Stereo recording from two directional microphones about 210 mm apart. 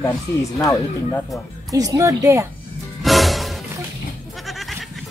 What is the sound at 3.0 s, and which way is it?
Music, centre (ahead or behind).